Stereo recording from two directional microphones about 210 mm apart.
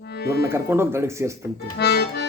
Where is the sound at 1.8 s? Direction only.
50° left (ahead or behind).